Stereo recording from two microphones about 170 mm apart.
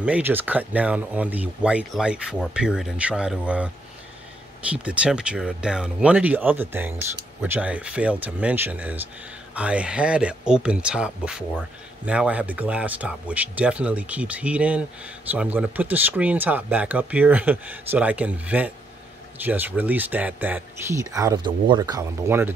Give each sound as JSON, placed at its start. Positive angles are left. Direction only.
{"t": 0.0, "sound": "speech", "side_deg": -10}